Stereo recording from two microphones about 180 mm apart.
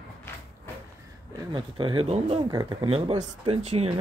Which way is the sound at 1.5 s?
30° right (ahead or behind).